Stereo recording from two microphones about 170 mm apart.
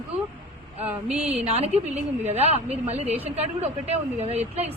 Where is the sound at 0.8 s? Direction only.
10° right (ahead or behind).